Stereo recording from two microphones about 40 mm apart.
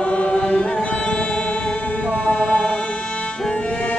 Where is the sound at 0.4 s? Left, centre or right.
Centre.